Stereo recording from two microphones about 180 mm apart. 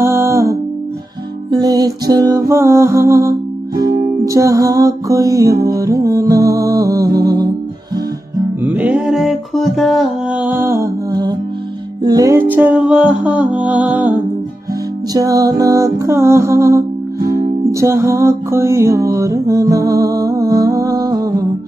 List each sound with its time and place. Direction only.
0.0 s music: 15° right (ahead or behind)
8.6 s music: 5° right (ahead or behind)
15.1 s music: 20° right (ahead or behind)